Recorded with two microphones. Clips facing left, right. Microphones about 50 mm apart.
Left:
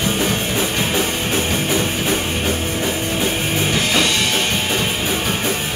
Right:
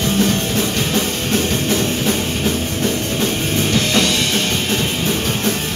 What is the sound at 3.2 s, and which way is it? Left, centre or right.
Music, centre.